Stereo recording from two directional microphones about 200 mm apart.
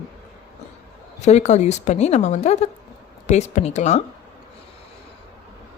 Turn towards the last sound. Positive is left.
turn(degrees=35)  # may be behind; listen again after turning